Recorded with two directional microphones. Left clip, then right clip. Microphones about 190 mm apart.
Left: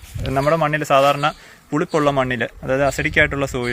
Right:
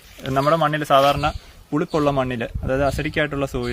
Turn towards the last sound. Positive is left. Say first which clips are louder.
# left 5 dB
turn(degrees=10)  # may be behind; listen again after turning